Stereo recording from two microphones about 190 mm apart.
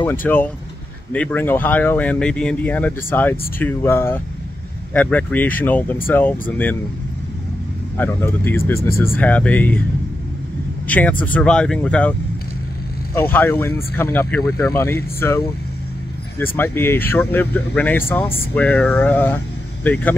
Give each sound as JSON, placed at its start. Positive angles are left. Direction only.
{"t": 0.0, "sound": "speech", "side_deg": 10}
{"t": 8.0, "sound": "speech", "side_deg": 10}
{"t": 10.9, "sound": "speech", "side_deg": 10}